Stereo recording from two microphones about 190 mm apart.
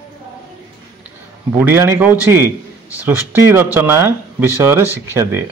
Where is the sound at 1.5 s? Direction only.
10° right (ahead or behind).